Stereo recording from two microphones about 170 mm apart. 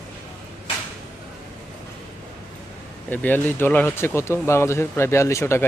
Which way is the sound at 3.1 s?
10° left (ahead or behind).